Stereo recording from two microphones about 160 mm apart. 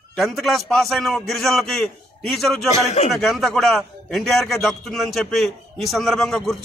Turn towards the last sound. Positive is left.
turn(degrees=0)  # may be behind; listen again after turning